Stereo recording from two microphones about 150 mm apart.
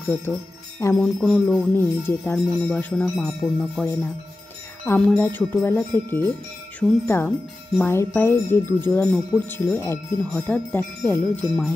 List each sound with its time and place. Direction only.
0.0 s jingle bell: 15° left (ahead or behind)
0.7 s wind chime: 20° left (ahead or behind)
1.0 s wind chime: centre (ahead or behind)
3.8 s speech: 15° left (ahead or behind)